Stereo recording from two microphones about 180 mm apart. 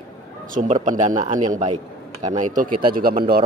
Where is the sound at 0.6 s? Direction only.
45° right (ahead or behind).